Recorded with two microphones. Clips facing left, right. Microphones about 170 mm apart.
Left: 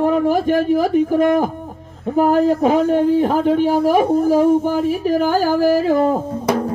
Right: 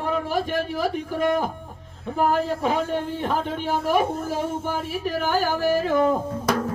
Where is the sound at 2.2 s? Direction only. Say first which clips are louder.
Left 8 dB; 45° left (ahead or behind).